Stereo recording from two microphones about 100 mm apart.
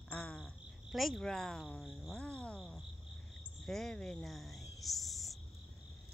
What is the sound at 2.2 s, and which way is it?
Speech, 10° left (ahead or behind).